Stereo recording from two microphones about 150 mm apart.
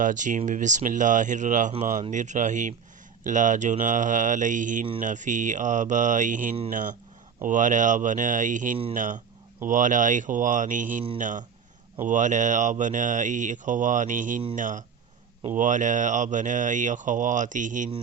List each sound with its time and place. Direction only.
0.0 s speech: 55° right (ahead or behind)